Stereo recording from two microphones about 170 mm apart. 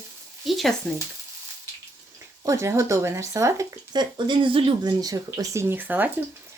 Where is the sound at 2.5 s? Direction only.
15° right (ahead or behind).